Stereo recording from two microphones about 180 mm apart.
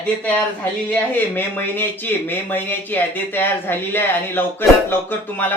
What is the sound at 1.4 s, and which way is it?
A man's voice, 10° left (ahead or behind).